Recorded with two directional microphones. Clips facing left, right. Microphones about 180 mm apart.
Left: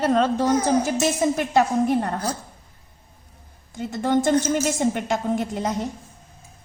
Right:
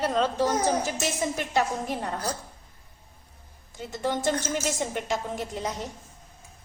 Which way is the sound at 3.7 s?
55° left (ahead or behind).